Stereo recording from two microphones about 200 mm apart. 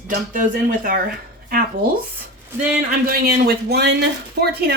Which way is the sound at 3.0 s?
50° right (ahead or behind).